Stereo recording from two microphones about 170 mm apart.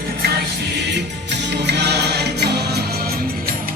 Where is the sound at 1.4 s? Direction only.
90° right.